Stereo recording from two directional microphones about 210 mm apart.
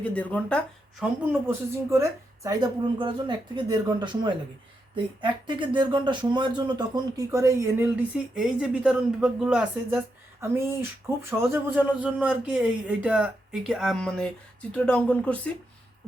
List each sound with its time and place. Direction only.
0.0 s speech: 5° left (ahead or behind)
1.2 s speech: 10° right (ahead or behind)
8.4 s speech: 5° right (ahead or behind)